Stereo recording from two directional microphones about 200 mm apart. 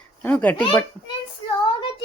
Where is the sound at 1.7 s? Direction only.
25° left (ahead or behind).